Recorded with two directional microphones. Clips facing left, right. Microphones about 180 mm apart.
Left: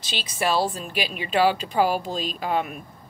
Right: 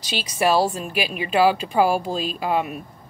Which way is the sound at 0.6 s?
10° right (ahead or behind).